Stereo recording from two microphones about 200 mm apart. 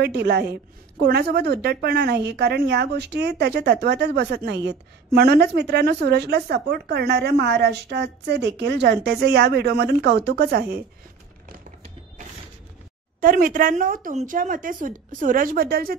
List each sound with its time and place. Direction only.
0.0 s a woman's voice: 55° right (ahead or behind)
13.2 s a woman's voice: 45° right (ahead or behind)